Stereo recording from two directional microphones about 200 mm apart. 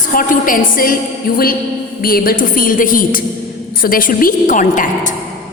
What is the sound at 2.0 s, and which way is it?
A woman's voice, 45° left (ahead or behind).